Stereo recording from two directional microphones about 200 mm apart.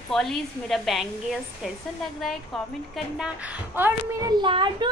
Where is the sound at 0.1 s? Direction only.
Centre (ahead or behind).